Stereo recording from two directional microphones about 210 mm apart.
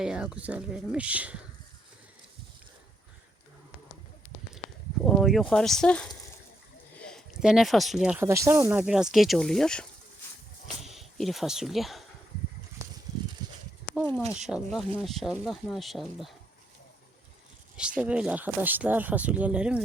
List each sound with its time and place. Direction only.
0.0 s speech: 5° right (ahead or behind)
5.0 s speech: centre (ahead or behind)
13.4 s a sound: 20° right (ahead or behind)
14.3 s speech: centre (ahead or behind)
17.7 s speech: 5° right (ahead or behind)